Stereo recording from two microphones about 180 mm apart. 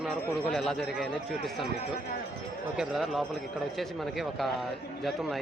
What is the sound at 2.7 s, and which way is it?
Speech, centre (ahead or behind).